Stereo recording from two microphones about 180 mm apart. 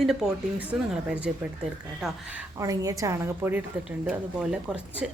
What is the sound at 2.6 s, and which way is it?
A woman's voice, 20° right (ahead or behind).